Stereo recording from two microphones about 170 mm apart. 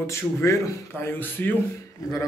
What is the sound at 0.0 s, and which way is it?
Speech, 15° left (ahead or behind).